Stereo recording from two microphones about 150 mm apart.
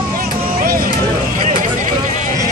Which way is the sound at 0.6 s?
75° right (ahead or behind).